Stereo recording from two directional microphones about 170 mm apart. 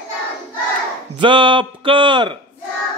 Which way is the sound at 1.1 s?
30° right (ahead or behind).